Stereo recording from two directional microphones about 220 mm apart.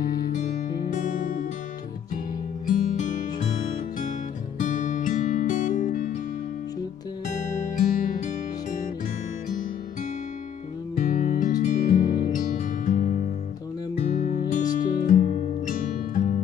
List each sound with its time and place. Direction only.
0.0 s music: 35° left (ahead or behind)
2.6 s music: 35° left (ahead or behind)
7.9 s music: 40° left (ahead or behind)
11.0 s music: 35° left (ahead or behind)